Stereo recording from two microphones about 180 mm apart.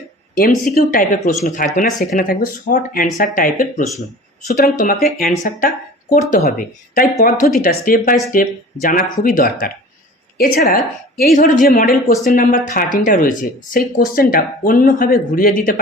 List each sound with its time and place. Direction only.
0.3 s a woman's voice: 50° left (ahead or behind)
12.2 s speech: 40° left (ahead or behind)